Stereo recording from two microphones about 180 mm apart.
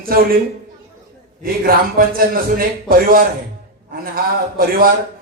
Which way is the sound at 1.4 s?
55° right (ahead or behind).